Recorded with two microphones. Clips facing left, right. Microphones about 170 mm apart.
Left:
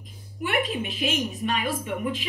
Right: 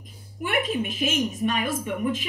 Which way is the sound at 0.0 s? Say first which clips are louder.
Left 1 dB; 45° right (ahead or behind).